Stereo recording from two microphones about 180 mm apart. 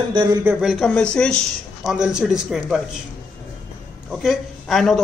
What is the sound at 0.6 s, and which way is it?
Speech, centre (ahead or behind).